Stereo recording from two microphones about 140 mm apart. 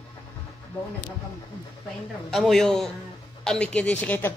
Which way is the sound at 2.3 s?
Centre (ahead or behind).